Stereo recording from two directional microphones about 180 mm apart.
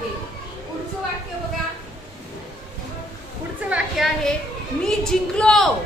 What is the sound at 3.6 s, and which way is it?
Children playing, centre (ahead or behind).